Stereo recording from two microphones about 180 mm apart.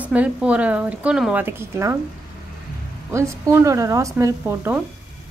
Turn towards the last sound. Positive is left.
turn(degrees=-10)  # may be behind; listen again after turning